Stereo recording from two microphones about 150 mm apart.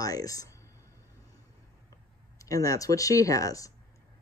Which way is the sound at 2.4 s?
20° left (ahead or behind).